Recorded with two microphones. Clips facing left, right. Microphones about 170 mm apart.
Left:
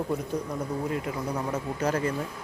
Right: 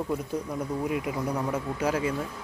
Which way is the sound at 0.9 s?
20° right (ahead or behind).